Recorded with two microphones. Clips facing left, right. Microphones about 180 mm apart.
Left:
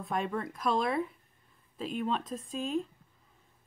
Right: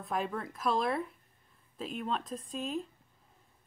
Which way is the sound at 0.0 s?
Centre (ahead or behind).